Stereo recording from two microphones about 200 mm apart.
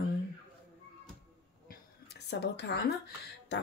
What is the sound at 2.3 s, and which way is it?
A woman's voice, 55° left (ahead or behind).